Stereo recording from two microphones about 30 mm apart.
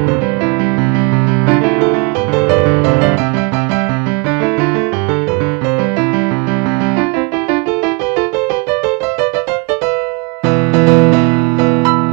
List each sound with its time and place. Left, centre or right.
1.5 s music: centre
10.5 s music: centre